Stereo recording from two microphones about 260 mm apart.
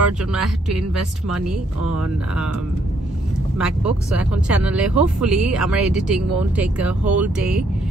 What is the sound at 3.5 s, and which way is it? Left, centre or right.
Speech, centre.